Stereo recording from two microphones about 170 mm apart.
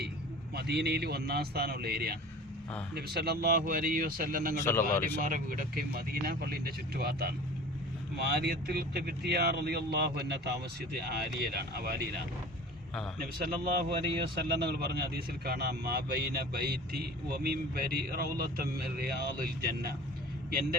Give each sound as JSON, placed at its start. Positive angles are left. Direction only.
{"t": 0.5, "sound": "speech", "side_deg": -75}
{"t": 4.6, "sound": "speech", "side_deg": 15}
{"t": 5.2, "sound": "speech", "side_deg": -55}
{"t": 13.2, "sound": "speech", "side_deg": -60}
{"t": 14.3, "sound": "speech", "side_deg": -70}